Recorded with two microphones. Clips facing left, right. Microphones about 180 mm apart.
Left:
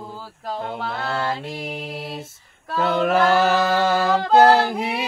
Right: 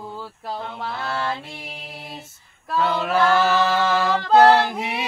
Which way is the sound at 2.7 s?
50° left (ahead or behind).